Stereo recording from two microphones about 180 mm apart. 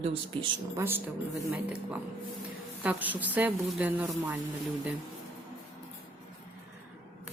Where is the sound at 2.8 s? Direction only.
10° right (ahead or behind).